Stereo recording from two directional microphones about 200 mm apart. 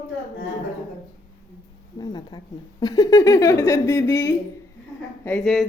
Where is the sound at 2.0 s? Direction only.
20° left (ahead or behind); by 5.7 s centre (ahead or behind).